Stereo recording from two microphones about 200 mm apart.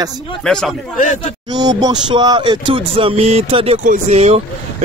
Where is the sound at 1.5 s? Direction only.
20° right (ahead or behind).